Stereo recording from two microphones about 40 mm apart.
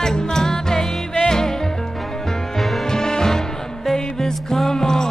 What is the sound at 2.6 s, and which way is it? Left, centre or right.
Music, centre.